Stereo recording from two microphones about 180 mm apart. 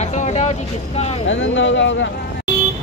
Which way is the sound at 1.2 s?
90° left.